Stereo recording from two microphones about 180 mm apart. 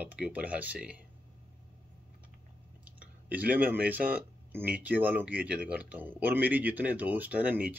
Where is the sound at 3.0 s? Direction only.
10° right (ahead or behind).